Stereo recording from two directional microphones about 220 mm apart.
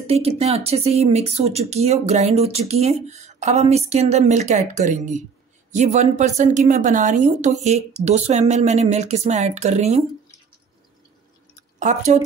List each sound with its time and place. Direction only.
0.0 s a woman's voice: 25° right (ahead or behind)
11.8 s a woman's voice: 35° right (ahead or behind)